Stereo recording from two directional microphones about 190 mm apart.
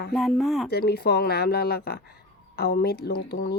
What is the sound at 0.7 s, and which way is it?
Speech, 55° left (ahead or behind).